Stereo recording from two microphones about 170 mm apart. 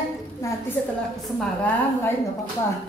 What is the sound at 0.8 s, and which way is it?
Speech, 10° left (ahead or behind).